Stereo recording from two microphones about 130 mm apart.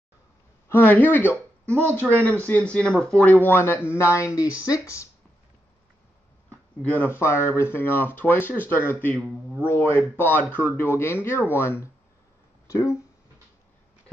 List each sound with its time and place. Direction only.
0.7 s a woman's voice: 15° left (ahead or behind)
6.5 s a sound: 15° left (ahead or behind)
7.2 s speech: 20° left (ahead or behind)